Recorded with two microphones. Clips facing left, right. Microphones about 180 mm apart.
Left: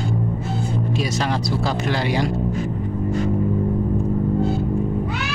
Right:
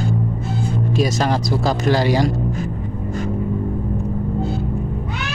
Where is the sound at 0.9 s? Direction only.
45° right (ahead or behind).